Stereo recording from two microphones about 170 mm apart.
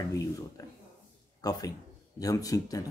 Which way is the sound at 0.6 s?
20° left (ahead or behind).